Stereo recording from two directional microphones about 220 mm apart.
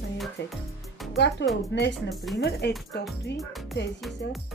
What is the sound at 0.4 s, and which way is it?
Speech, 50° left (ahead or behind).